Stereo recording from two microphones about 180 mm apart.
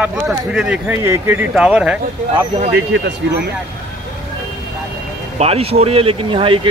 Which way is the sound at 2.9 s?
75° right (ahead or behind).